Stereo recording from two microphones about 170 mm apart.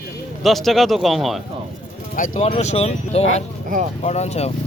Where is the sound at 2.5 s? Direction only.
40° left (ahead or behind).